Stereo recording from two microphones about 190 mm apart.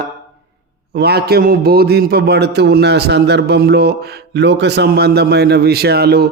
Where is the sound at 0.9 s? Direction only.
60° right (ahead or behind).